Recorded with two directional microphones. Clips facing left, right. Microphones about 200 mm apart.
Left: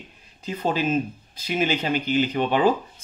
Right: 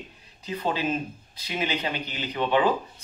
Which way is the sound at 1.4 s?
45° left (ahead or behind).